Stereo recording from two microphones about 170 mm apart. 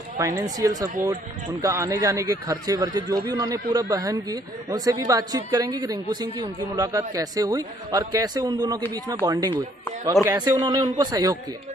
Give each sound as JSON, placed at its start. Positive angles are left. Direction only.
{"t": 0.4, "sound": "a man's voice", "side_deg": -20}